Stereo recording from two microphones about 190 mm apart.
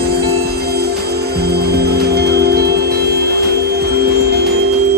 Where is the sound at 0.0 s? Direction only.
55° right (ahead or behind).